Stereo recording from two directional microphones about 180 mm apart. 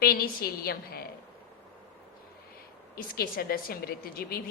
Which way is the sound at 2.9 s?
55° left (ahead or behind).